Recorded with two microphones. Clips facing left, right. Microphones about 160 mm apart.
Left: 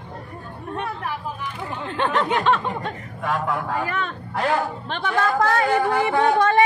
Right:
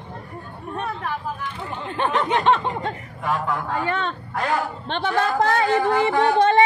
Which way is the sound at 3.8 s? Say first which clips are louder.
Right 2 dB; 30° right (ahead or behind).